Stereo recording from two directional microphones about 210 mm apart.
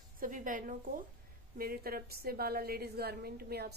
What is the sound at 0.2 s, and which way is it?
A woman's voice, 40° right (ahead or behind).